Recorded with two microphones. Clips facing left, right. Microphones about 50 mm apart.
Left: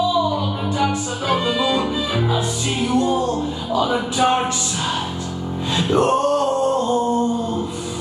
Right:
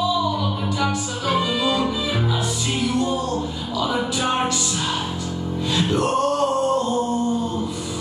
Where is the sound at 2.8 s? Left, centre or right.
Left.